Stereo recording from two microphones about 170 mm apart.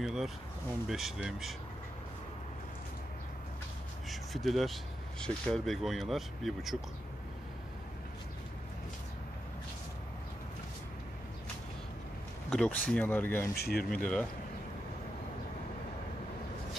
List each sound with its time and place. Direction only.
0.0 s speech: centre (ahead or behind)
4.1 s speech: centre (ahead or behind)
12.4 s speech: 5° left (ahead or behind)
13.6 s speech: 65° left (ahead or behind)
13.8 s speech: 5° left (ahead or behind)